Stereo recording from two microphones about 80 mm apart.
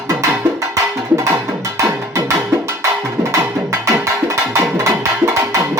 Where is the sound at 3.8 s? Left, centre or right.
Right.